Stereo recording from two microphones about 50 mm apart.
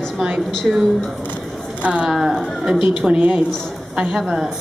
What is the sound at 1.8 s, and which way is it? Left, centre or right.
Speech, right.